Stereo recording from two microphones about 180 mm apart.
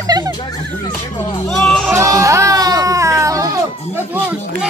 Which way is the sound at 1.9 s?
15° right (ahead or behind).